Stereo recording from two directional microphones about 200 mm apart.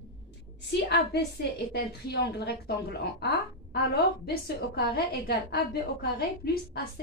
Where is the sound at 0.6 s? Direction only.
60° left (ahead or behind).